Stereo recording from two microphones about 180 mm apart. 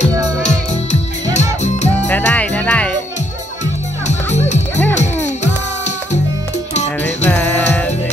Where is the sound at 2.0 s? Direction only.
10° left (ahead or behind).